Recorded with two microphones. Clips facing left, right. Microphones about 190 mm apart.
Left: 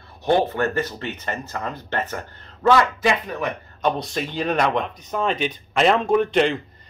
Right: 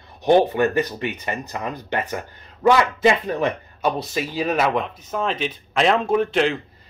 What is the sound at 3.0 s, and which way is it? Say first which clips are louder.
Speech: right 4 dB; 25° right (ahead or behind).